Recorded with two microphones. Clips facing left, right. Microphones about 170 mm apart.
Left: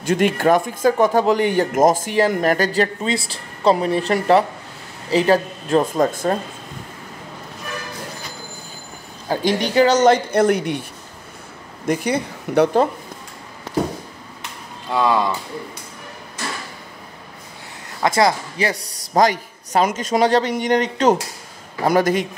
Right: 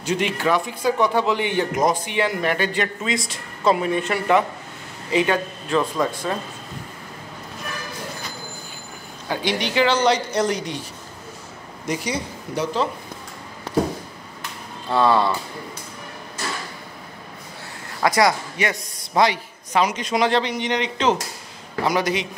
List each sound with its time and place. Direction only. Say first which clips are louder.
0.0 s a man's voice: left 5 dB; 50° left (ahead or behind)
9.3 s a man's voice: left 5 dB; 45° left (ahead or behind)
14.9 s speech: even; 15° left (ahead or behind)
18.0 s a man's voice: left 1 dB; 25° left (ahead or behind); by 22.3 s 50° left (ahead or behind)